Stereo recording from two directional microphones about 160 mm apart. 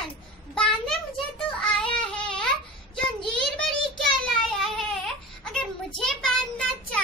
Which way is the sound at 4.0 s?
Centre (ahead or behind).